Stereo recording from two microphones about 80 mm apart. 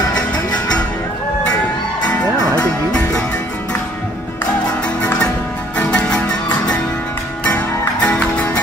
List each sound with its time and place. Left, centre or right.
2.0 s music: centre
5.8 s music: centre
7.4 s music: centre